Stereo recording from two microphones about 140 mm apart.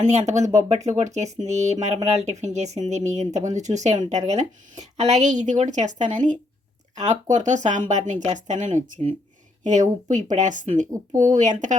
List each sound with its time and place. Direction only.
0.0 s speech: 55° right (ahead or behind)